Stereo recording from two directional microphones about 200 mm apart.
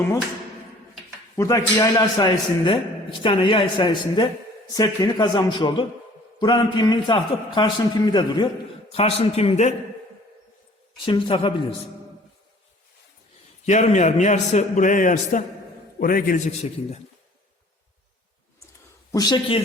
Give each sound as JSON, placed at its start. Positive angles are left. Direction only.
{"t": 1.4, "sound": "a man's voice", "side_deg": 15}
{"t": 10.9, "sound": "a man's voice", "side_deg": 25}
{"t": 13.7, "sound": "a man's voice", "side_deg": 35}
{"t": 19.1, "sound": "a man's voice", "side_deg": 20}